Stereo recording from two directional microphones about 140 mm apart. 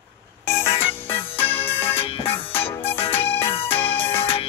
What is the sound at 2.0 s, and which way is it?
Music, 40° left (ahead or behind).